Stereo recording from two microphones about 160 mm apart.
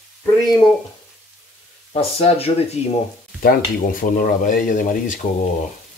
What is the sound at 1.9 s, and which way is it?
Speech, 40° left (ahead or behind).